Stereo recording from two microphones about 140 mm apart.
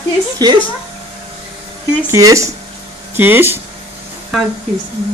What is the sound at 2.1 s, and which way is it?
Speech, 25° right (ahead or behind).